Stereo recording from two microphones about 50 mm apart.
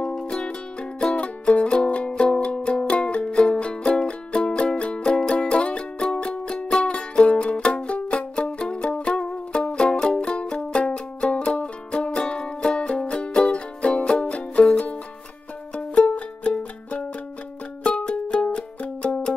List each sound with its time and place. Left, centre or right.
0.1 s music: centre